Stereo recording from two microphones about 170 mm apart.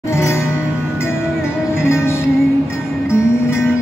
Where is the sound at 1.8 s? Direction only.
15° left (ahead or behind).